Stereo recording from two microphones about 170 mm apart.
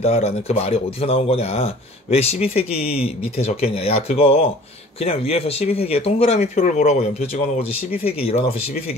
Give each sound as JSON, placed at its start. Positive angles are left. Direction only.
{"t": 0.0, "sound": "speech", "side_deg": 35}